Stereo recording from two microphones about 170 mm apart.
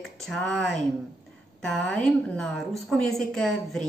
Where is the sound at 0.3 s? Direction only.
5° left (ahead or behind).